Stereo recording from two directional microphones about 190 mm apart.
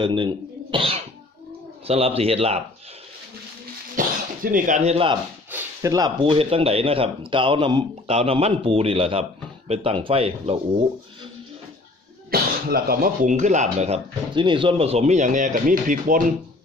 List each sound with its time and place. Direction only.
0.0 s throat clearing: 25° right (ahead or behind)
1.9 s speech: 30° right (ahead or behind)
4.0 s cough: 45° right (ahead or behind)
4.5 s speech: 45° right (ahead or behind); by 5.2 s 30° right (ahead or behind)
5.5 s speech: 10° right (ahead or behind); by 10.6 s 30° right (ahead or behind)
12.3 s speech: 50° right (ahead or behind)